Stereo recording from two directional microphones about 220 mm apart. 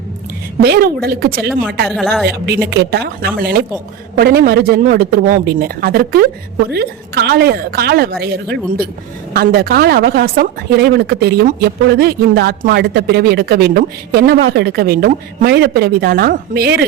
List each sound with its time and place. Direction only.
0.6 s a woman's voice: 45° right (ahead or behind)
2.0 s speech: centre (ahead or behind)
2.6 s a woman's voice: 50° right (ahead or behind)